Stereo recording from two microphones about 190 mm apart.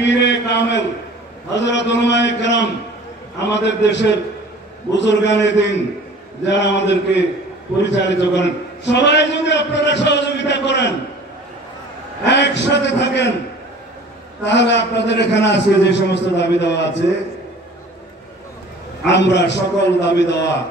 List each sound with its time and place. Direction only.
0.0 s a man's voice: 65° left (ahead or behind)
12.3 s a man's voice: 65° left (ahead or behind)
14.4 s a man's voice: 65° left (ahead or behind)
19.0 s a man's voice: 65° left (ahead or behind)